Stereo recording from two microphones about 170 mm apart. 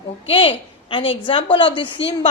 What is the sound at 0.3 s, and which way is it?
Speech, 30° left (ahead or behind).